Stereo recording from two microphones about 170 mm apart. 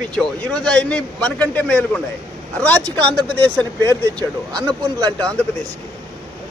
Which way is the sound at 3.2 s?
10° left (ahead or behind).